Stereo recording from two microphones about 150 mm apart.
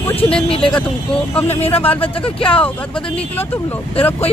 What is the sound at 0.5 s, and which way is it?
Speech, 35° left (ahead or behind).